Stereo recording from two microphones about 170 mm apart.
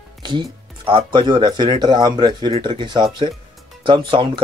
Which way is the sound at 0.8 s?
30° right (ahead or behind).